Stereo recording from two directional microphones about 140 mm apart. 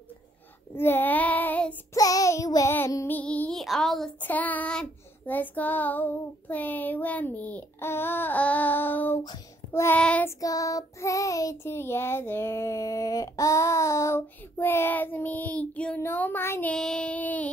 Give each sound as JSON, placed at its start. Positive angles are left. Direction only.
{"t": 0.7, "sound": "child singing", "side_deg": 15}
{"t": 2.0, "sound": "child singing", "side_deg": 25}
{"t": 2.7, "sound": "music", "side_deg": 20}
{"t": 3.2, "sound": "child singing", "side_deg": 10}
{"t": 6.5, "sound": "a child's voice", "side_deg": 10}
{"t": 9.7, "sound": "child singing", "side_deg": 15}
{"t": 10.4, "sound": "child singing", "side_deg": 25}
{"t": 16.7, "sound": "child singing", "side_deg": 5}